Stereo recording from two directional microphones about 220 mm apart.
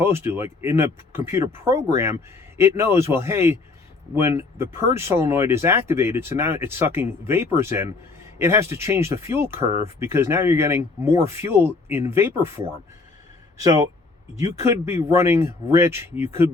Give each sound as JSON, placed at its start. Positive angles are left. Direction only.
{"t": 0.0, "sound": "speech", "side_deg": -10}